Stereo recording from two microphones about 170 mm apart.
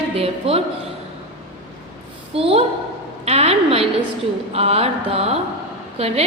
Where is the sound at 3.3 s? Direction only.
35° right (ahead or behind).